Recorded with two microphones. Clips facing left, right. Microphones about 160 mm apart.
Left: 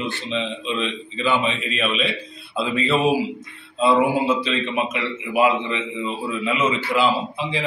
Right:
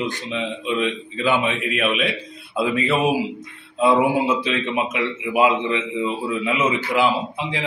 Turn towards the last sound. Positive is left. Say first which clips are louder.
# left 1 dB
turn(degrees=-15)  # may be behind; listen again after turning